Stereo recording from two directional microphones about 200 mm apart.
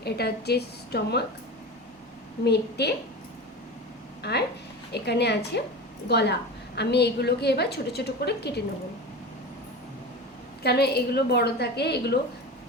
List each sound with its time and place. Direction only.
0.0 s a woman's voice: 55° left (ahead or behind)
2.4 s a woman's voice: 55° left (ahead or behind)
4.2 s a woman's voice: 55° left (ahead or behind)
10.6 s a woman's voice: 55° left (ahead or behind)